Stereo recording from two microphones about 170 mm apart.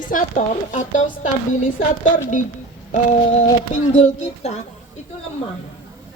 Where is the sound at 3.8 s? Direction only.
45° left (ahead or behind).